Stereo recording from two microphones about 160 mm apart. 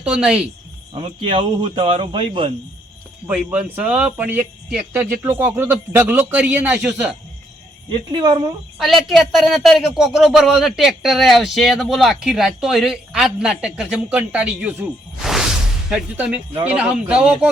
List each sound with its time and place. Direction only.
0.0 s speech: 5° right (ahead or behind)
0.9 s speech: 30° right (ahead or behind)
3.2 s speech: 10° right (ahead or behind)
7.9 s speech: 30° right (ahead or behind)
8.8 s speech: centre (ahead or behind)